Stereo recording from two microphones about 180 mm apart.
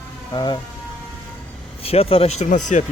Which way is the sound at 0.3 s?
25° left (ahead or behind).